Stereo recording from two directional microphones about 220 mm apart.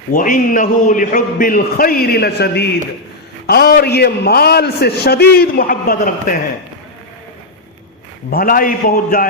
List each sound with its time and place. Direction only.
0.1 s a man's voice: 40° left (ahead or behind)
8.3 s a man's voice: 40° left (ahead or behind)